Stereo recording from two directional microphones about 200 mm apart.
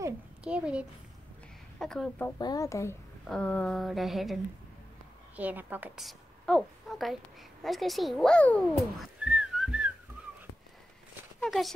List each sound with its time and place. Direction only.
0.4 s a child's voice: 5° right (ahead or behind)
1.8 s a sound: centre (ahead or behind)
2.3 s speech: 20° left (ahead or behind)
3.3 s a sound: 5° left (ahead or behind)
5.3 s a woman's voice: 10° right (ahead or behind)
11.4 s speech: centre (ahead or behind)